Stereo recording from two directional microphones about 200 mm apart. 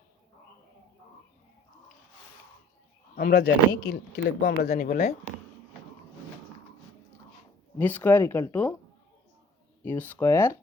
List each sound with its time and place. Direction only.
3.2 s speech: 50° left (ahead or behind)
7.8 s speech: 10° left (ahead or behind)
9.8 s speech: 10° left (ahead or behind)